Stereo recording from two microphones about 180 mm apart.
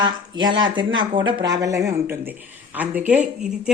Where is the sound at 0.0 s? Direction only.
25° right (ahead or behind).